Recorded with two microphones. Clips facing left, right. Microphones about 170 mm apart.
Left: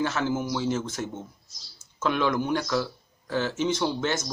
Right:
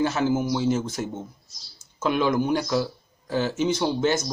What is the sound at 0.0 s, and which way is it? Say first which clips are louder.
Speech: right 4 dB; 15° right (ahead or behind).